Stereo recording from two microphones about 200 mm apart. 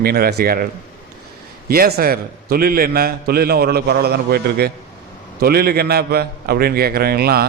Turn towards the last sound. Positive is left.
turn(degrees=-50)  # may be behind; listen again after turning